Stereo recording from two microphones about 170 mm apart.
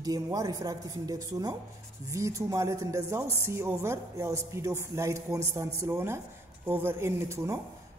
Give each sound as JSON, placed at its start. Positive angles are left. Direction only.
{"t": 0.0, "sound": "a man's voice", "side_deg": -20}